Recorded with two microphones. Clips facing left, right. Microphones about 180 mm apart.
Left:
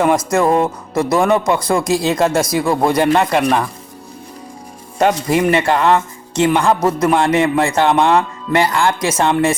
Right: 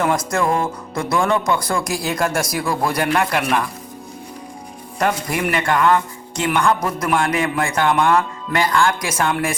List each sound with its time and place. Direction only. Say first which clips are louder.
0.3 s speech: left 5 dB; 20° left (ahead or behind)
4.9 s speech: left 6 dB; 25° left (ahead or behind)